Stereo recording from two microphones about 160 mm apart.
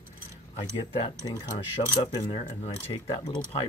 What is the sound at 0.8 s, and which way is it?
Speech, 30° left (ahead or behind).